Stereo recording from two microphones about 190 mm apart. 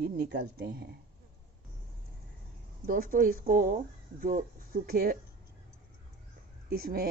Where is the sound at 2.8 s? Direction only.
50° right (ahead or behind).